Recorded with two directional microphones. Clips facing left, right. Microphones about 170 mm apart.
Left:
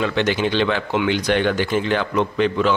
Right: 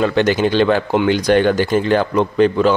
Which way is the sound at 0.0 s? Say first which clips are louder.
Right 5 dB; 45° right (ahead or behind).